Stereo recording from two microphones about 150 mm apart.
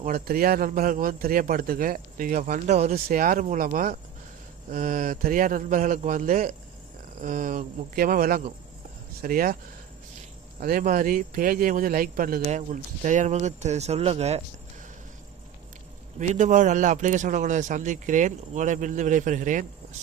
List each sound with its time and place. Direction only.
0.0 s a man's voice: 80° right; by 2.9 s 50° right (ahead or behind)
2.9 s a man's voice: 65° right (ahead or behind)
3.4 s a man's voice: 55° right (ahead or behind); by 9.6 s 70° right (ahead or behind)
10.6 s a man's voice: 70° right (ahead or behind)
12.5 s speech: 55° right (ahead or behind)
16.1 s a man's voice: 55° right (ahead or behind)